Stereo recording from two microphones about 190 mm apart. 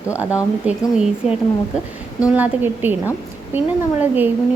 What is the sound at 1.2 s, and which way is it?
Speech, 35° left (ahead or behind).